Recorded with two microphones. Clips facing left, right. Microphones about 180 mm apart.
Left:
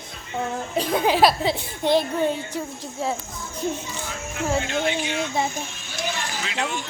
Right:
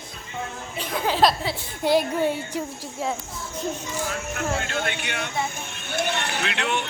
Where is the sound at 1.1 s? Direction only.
10° left (ahead or behind).